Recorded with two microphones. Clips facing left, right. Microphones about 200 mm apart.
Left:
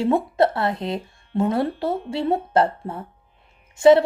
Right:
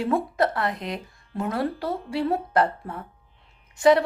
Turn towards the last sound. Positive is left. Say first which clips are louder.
# left 5 dB
turn(degrees=25)  # may be behind; listen again after turning